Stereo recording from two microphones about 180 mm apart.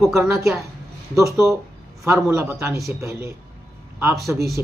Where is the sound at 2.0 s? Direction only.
15° right (ahead or behind).